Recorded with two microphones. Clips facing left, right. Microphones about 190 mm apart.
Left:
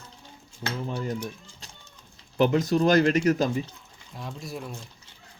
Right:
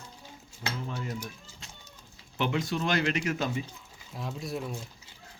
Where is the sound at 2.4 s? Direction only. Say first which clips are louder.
Left 8 dB; 40° left (ahead or behind).